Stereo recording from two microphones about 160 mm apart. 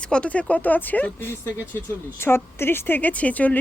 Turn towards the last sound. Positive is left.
turn(degrees=10)  # may be behind; listen again after turning